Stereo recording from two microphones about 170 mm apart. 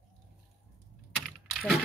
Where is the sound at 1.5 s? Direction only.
Centre (ahead or behind).